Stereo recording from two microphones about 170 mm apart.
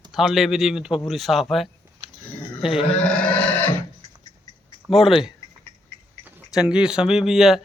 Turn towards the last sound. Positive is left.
turn(degrees=0)  # may be behind; listen again after turning